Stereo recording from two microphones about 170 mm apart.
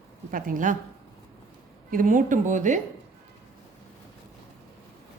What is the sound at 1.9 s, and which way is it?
Speech, 50° right (ahead or behind).